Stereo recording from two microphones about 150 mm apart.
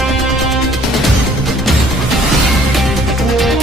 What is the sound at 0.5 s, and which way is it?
Music, centre (ahead or behind).